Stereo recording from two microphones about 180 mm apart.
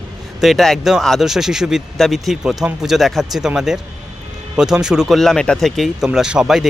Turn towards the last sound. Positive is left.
turn(degrees=0)  # may be behind; listen again after turning